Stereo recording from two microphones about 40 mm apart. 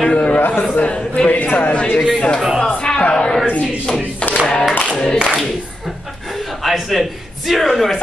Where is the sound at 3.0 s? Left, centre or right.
Left.